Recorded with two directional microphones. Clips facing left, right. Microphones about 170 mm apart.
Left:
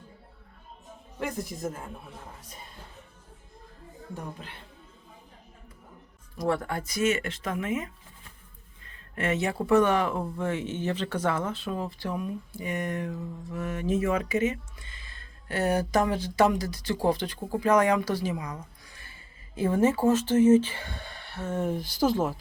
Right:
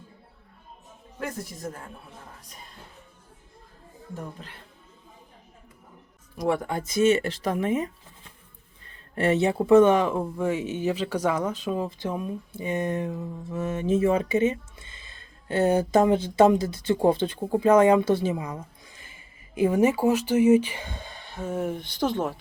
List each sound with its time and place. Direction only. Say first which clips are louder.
6.3 s speech: right 2 dB; 15° right (ahead or behind); by 7.9 s 35° right (ahead or behind)
9.1 s speech: right 6 dB; 35° right (ahead or behind); by 22.4 s centre (ahead or behind)